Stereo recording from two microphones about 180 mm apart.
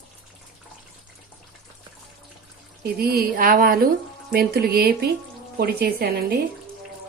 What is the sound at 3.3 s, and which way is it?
A woman's voice, 50° right (ahead or behind).